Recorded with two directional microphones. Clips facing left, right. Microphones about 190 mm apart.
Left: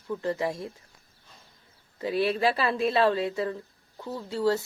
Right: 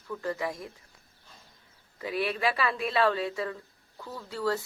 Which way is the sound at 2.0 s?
30° left (ahead or behind).